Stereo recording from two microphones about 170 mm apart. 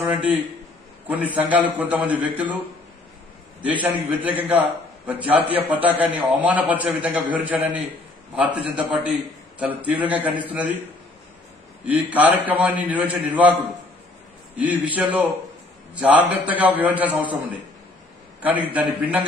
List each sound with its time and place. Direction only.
0.0 s a man's voice: 10° right (ahead or behind)
3.8 s a man's voice: 10° right (ahead or behind)
11.8 s a man's voice: 10° right (ahead or behind)
14.6 s a man's voice: 10° right (ahead or behind)